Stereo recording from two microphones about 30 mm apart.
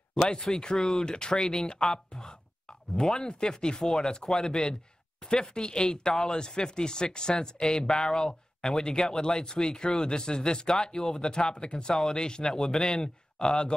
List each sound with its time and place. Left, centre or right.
0.1 s speech: left
0.7 s speech: centre
1.0 s speech: left
3.8 s speech: centre
4.5 s speech: left
7.9 s speech: centre